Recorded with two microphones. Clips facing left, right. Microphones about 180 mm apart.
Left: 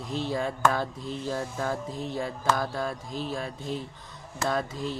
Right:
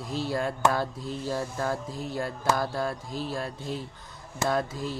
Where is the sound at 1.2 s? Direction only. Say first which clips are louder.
Right 1 dB; 5° right (ahead or behind).